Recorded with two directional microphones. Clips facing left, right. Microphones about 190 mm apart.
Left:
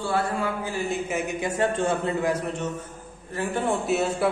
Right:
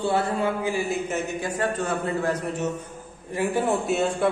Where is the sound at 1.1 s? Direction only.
20° left (ahead or behind).